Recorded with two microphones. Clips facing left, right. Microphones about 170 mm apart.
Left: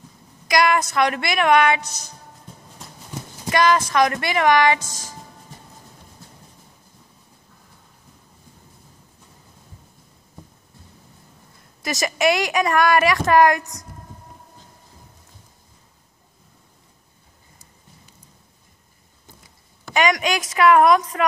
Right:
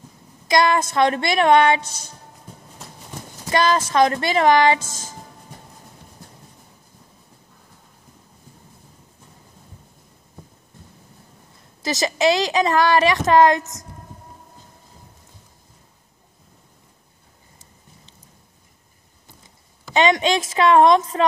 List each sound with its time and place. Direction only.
0.5 s speech: 25° right (ahead or behind)
3.5 s speech: 30° right (ahead or behind)
12.0 s speech: 20° right (ahead or behind)
19.9 s speech: 25° right (ahead or behind)